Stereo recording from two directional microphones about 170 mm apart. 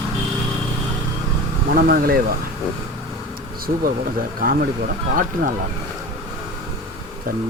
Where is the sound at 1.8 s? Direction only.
60° right (ahead or behind).